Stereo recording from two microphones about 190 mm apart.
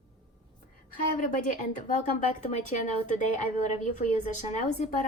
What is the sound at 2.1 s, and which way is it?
A woman's voice, 40° left (ahead or behind).